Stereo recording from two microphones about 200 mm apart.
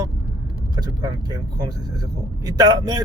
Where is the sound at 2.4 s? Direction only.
20° right (ahead or behind).